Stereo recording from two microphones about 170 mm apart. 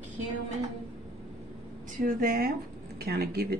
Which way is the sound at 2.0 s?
55° right (ahead or behind).